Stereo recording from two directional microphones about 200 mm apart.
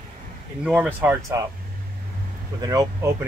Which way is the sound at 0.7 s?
10° right (ahead or behind).